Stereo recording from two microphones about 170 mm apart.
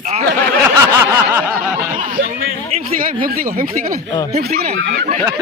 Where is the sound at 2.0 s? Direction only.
45° right (ahead or behind).